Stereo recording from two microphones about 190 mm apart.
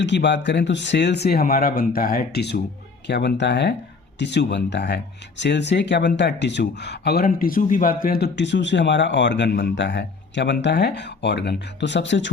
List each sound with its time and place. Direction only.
0.0 s speech: 65° left (ahead or behind)